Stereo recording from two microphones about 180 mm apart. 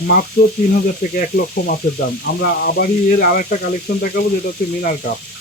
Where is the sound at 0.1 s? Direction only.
55° left (ahead or behind).